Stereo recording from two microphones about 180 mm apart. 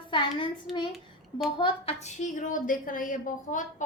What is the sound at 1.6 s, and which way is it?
A woman's voice, 30° left (ahead or behind).